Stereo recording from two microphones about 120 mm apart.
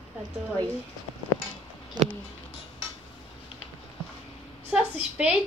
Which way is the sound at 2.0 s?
35° right (ahead or behind).